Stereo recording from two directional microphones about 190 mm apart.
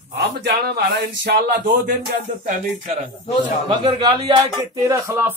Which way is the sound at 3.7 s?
25° right (ahead or behind).